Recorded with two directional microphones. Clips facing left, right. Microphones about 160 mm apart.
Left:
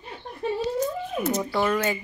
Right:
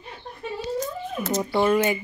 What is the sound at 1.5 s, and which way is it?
Speech, 20° right (ahead or behind).